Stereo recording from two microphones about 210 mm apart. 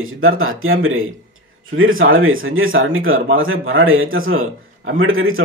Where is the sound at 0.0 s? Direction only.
75° right (ahead or behind).